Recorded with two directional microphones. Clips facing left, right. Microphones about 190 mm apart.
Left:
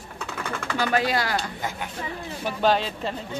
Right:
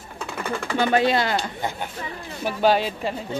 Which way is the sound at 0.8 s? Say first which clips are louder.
Right 4 dB; 25° right (ahead or behind).